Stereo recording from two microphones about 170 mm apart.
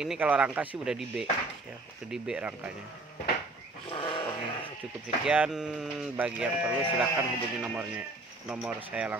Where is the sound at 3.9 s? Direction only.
30° left (ahead or behind).